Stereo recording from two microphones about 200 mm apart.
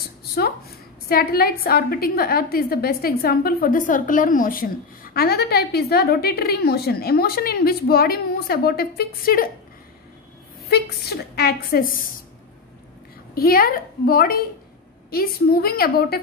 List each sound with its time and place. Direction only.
1.0 s a woman's voice: 50° left (ahead or behind)
10.7 s a woman's voice: 50° left (ahead or behind)
13.3 s a woman's voice: 50° left (ahead or behind)